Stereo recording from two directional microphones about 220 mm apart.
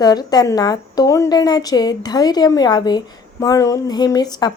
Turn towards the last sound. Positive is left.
turn(degrees=20)  # may be behind; listen again after turning